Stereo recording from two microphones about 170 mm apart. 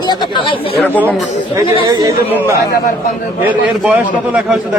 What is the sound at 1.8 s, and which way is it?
A man's voice, 20° right (ahead or behind).